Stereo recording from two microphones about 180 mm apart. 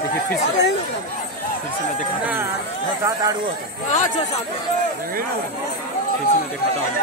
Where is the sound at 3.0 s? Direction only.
20° right (ahead or behind).